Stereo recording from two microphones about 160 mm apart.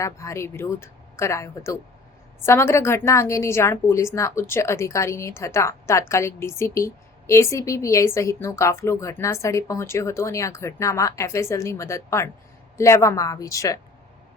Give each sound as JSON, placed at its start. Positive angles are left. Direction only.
{"t": 0.0, "sound": "a woman's voice", "side_deg": 20}